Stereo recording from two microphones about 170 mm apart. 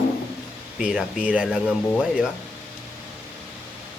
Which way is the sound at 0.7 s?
5° right (ahead or behind).